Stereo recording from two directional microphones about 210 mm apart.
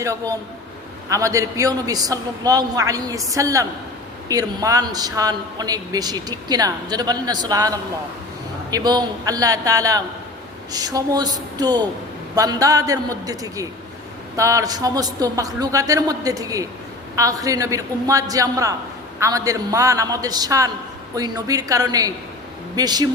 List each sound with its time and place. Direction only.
0.0 s a woman's voice: 15° right (ahead or behind)